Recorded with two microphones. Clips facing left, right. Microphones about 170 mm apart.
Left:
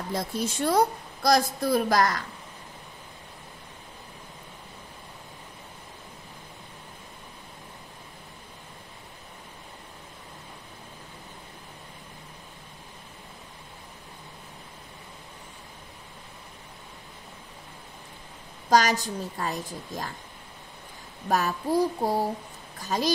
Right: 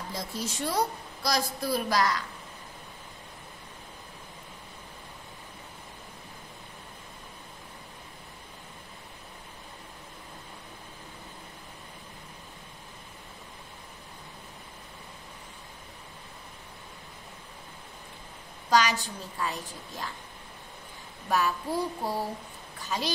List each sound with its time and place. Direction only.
0.1 s a woman's voice: 55° left (ahead or behind)
18.7 s a woman's voice: 40° left (ahead or behind)
21.3 s a woman's voice: 40° left (ahead or behind)